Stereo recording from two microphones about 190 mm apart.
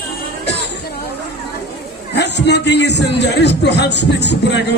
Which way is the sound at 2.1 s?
65° left (ahead or behind).